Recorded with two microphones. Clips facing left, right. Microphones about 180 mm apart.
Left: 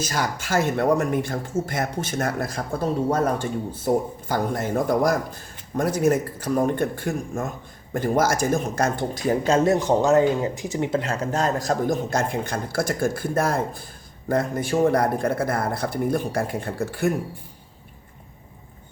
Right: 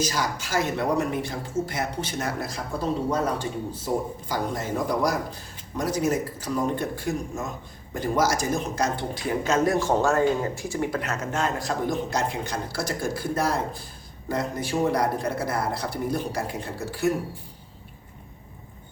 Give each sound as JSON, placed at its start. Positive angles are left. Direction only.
{"t": 0.0, "sound": "speech", "side_deg": 55}
{"t": 3.8, "sound": "a man's voice", "side_deg": 55}
{"t": 9.4, "sound": "speech", "side_deg": 30}
{"t": 9.7, "sound": "speech", "side_deg": 20}